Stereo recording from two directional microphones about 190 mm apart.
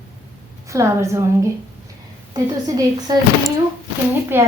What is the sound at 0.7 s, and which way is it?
A woman's voice, 15° right (ahead or behind).